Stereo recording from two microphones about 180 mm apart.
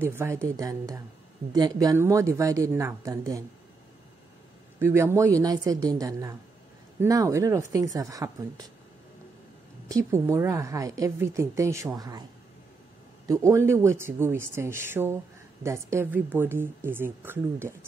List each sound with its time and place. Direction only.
0.0 s a woman's voice: 15° right (ahead or behind)
4.7 s a woman's voice: 15° right (ahead or behind)
9.8 s a woman's voice: 15° right (ahead or behind)
13.3 s a woman's voice: 15° right (ahead or behind)